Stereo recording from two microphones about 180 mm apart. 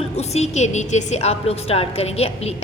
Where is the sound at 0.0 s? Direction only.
35° left (ahead or behind).